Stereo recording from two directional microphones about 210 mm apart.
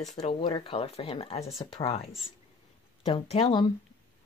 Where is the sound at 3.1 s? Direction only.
25° left (ahead or behind).